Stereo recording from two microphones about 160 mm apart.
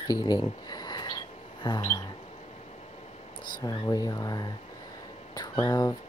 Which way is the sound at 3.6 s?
25° left (ahead or behind).